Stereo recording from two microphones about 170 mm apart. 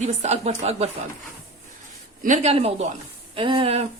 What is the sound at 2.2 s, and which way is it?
Speech, 40° right (ahead or behind).